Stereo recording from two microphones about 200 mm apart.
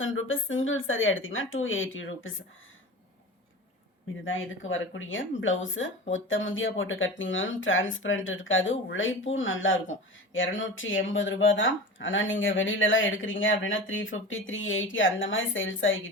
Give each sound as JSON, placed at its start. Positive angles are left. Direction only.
{"t": 0.0, "sound": "speech", "side_deg": 80}
{"t": 4.2, "sound": "speech", "side_deg": 75}